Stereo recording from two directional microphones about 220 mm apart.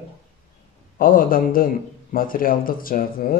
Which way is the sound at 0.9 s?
40° left (ahead or behind).